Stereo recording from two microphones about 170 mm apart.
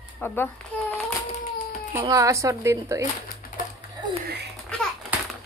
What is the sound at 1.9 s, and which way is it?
Speech, 20° right (ahead or behind).